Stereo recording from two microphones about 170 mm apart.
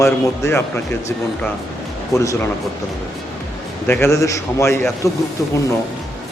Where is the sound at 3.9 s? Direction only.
15° left (ahead or behind).